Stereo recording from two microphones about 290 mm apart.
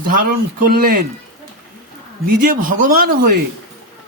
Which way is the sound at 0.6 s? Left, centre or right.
Right.